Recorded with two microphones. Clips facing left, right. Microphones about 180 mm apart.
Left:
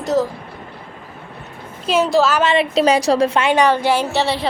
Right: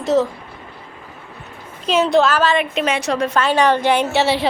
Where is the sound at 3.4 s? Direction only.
10° left (ahead or behind).